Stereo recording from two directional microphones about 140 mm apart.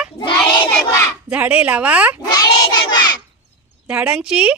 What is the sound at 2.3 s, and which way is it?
Cat, 30° left (ahead or behind).